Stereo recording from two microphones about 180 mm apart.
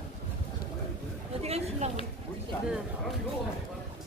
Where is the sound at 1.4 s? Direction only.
35° right (ahead or behind).